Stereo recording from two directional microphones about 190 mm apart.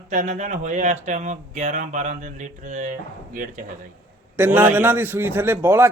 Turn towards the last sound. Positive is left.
turn(degrees=-15)  # may be behind; listen again after turning